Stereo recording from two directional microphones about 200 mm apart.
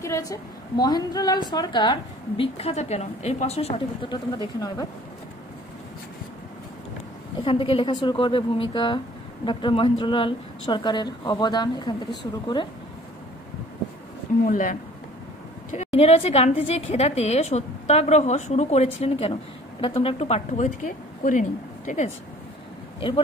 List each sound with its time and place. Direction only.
0.0 s speech: 15° left (ahead or behind)
7.4 s speech: 25° left (ahead or behind)
14.4 s speech: 45° left (ahead or behind)
15.7 s a woman's voice: 30° left (ahead or behind)
22.9 s speech: 25° left (ahead or behind)